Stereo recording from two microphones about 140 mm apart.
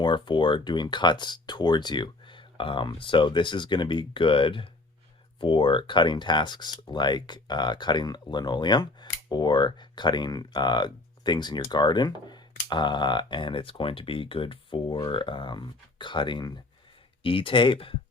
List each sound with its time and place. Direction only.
0.0 s speech: 35° left (ahead or behind)